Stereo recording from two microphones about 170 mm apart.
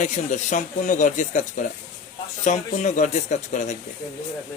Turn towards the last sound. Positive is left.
turn(degrees=45)  # may be behind; listen again after turning